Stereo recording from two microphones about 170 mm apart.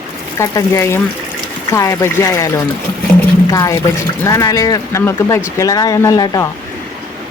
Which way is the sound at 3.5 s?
15° left (ahead or behind).